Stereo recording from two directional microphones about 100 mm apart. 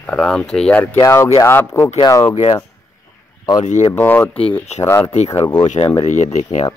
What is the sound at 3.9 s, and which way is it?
Speech, 20° left (ahead or behind).